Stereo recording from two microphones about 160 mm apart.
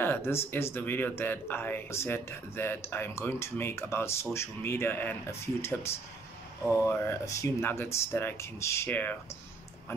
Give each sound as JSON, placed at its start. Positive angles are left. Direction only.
{"t": 0.0, "sound": "speech", "side_deg": 15}
{"t": 7.1, "sound": "speech", "side_deg": 20}